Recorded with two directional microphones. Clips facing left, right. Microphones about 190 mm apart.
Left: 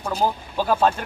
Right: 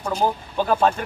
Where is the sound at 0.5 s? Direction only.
5° left (ahead or behind).